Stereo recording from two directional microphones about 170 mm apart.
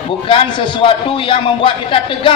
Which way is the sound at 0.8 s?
30° left (ahead or behind).